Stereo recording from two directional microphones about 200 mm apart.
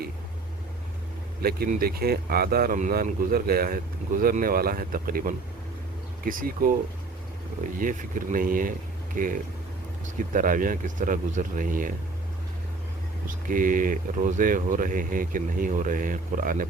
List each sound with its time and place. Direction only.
1.4 s speech: 50° right (ahead or behind)
7.8 s speech: 40° right (ahead or behind)
13.2 s speech: 45° right (ahead or behind)